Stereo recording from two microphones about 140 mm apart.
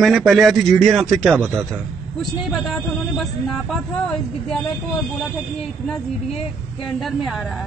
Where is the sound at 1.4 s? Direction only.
15° right (ahead or behind).